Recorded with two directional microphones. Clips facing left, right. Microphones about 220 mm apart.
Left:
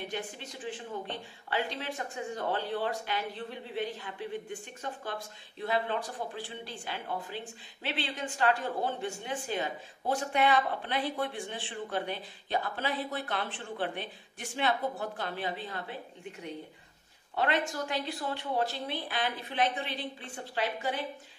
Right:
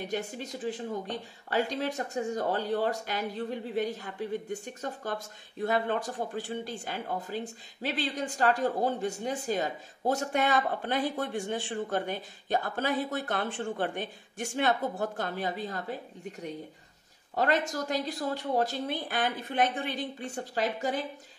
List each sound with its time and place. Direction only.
0.0 s speech: 40° right (ahead or behind)
17.4 s speech: 40° right (ahead or behind)